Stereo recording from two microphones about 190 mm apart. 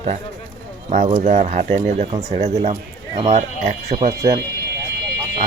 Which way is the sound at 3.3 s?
40° right (ahead or behind).